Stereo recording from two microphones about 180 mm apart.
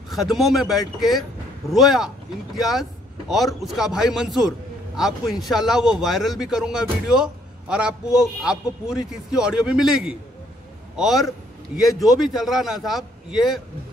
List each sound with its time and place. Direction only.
0.1 s a man's voice: centre (ahead or behind)